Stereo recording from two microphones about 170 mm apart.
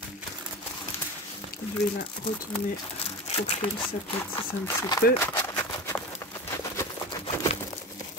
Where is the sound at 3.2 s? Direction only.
40° left (ahead or behind).